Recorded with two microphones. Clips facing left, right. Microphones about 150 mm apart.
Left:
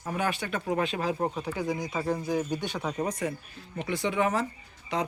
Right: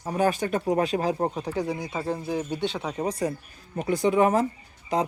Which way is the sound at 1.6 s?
10° right (ahead or behind).